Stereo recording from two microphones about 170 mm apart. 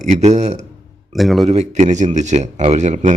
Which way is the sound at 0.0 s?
40° right (ahead or behind).